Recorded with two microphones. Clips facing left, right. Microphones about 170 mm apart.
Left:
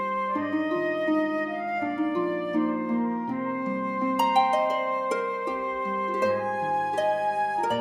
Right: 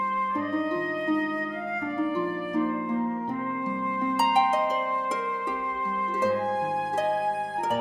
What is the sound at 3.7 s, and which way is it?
Music, 40° left (ahead or behind).